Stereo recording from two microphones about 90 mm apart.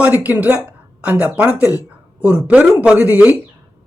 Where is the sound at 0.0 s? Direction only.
15° right (ahead or behind).